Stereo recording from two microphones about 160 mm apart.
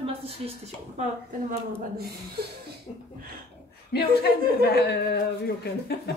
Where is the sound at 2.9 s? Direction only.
40° left (ahead or behind).